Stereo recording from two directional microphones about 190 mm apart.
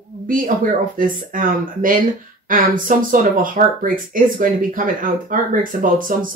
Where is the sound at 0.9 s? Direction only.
45° right (ahead or behind).